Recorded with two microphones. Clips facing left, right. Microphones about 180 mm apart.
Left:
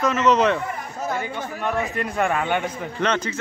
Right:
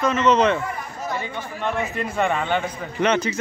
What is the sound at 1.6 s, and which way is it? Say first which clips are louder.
A man's voice: even; centre (ahead or behind).